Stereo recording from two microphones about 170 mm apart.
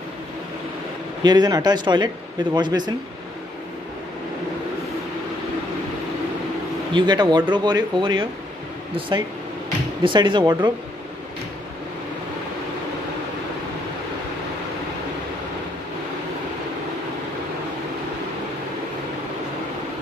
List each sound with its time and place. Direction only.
1.2 s speech: 25° right (ahead or behind)
6.9 s speech: 25° right (ahead or behind)
10.0 s speech: 30° right (ahead or behind)